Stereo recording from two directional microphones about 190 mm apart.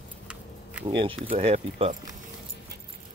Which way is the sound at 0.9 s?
25° right (ahead or behind).